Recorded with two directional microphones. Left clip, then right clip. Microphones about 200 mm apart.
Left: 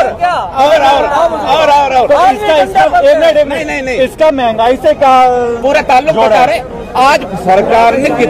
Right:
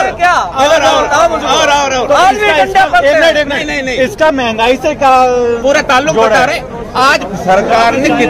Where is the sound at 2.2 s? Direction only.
35° right (ahead or behind); by 5.2 s 50° right (ahead or behind).